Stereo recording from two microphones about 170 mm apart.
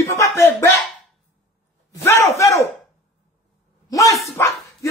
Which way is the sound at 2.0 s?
15° left (ahead or behind).